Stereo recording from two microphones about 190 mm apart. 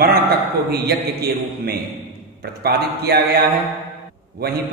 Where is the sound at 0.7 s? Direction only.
55° right (ahead or behind).